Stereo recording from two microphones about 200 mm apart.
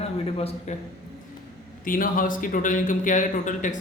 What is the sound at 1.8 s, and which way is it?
A man's voice, 45° left (ahead or behind).